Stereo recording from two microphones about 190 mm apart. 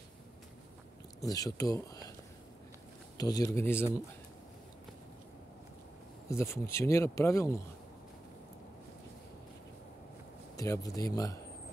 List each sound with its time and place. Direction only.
1.2 s speech: 20° left (ahead or behind)
3.2 s speech: 20° left (ahead or behind)
6.2 s speech: 15° left (ahead or behind)
10.5 s speech: 15° left (ahead or behind)